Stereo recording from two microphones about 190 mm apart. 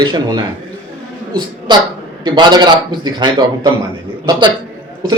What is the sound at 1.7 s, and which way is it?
A man's voice, 25° right (ahead or behind).